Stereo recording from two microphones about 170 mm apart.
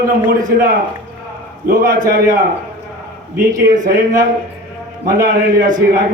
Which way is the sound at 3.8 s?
55° right (ahead or behind).